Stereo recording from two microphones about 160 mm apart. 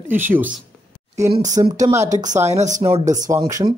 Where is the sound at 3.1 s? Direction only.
25° right (ahead or behind).